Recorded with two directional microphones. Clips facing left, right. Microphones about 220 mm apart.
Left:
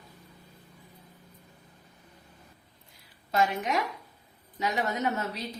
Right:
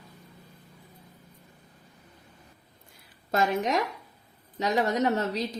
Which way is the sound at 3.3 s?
45° right (ahead or behind).